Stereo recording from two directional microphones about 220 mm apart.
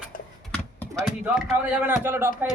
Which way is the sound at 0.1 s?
40° left (ahead or behind).